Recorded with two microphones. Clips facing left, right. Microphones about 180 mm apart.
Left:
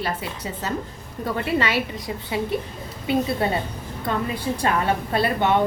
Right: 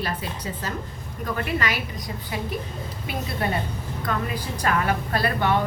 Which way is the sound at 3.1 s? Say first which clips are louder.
Left 6 dB; 25° left (ahead or behind).